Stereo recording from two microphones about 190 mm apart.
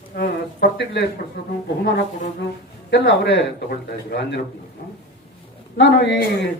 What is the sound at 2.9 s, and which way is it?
Speech, 65° left (ahead or behind).